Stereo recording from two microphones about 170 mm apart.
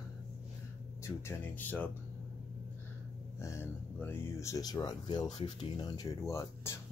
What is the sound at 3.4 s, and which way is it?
Speech, 15° left (ahead or behind).